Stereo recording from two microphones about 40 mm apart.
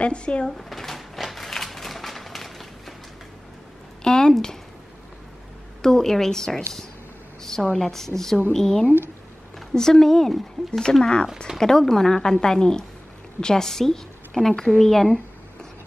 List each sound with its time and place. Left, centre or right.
0.0 s speech: left
0.5 s a sound: centre
4.0 s speech: centre
5.8 s a woman's voice: centre
7.7 s a woman's voice: centre